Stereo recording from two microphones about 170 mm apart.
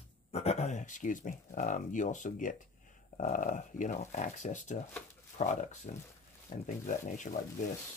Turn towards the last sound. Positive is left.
turn(degrees=45)  # may be behind; listen again after turning